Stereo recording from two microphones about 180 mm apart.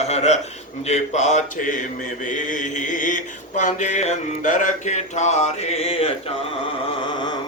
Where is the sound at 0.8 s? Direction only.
40° left (ahead or behind).